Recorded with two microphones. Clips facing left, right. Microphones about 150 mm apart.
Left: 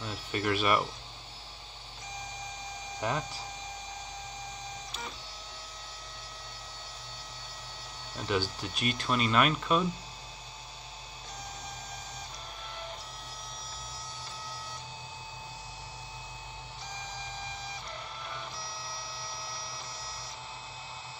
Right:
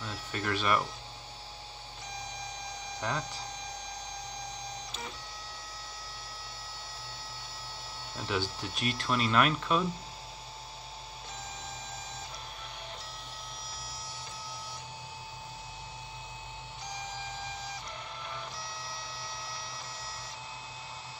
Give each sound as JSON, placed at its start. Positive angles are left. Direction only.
{"t": 0.0, "sound": "speech", "side_deg": 15}
{"t": 3.0, "sound": "speech", "side_deg": 20}
{"t": 8.3, "sound": "speech", "side_deg": 0}